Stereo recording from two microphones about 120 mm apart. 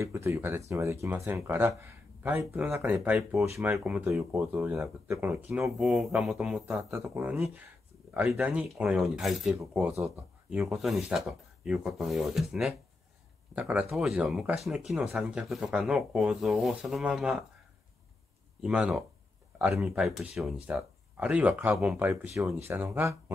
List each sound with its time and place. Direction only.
0.0 s speech: 25° right (ahead or behind)
5.7 s speech: 5° right (ahead or behind)
6.6 s speech: 15° right (ahead or behind)
18.6 s speech: 10° right (ahead or behind)